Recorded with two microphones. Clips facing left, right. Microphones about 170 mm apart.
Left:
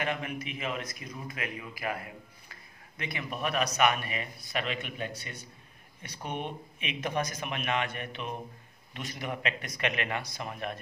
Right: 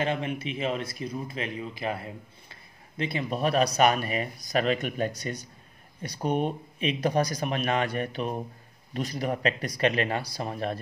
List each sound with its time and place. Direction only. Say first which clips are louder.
0.0 s speech: right 5 dB; 30° right (ahead or behind)